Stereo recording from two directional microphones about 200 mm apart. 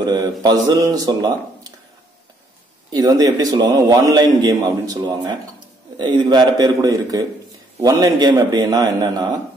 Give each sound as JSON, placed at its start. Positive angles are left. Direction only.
{"t": 0.0, "sound": "speech", "side_deg": -20}
{"t": 2.9, "sound": "a man's voice", "side_deg": -20}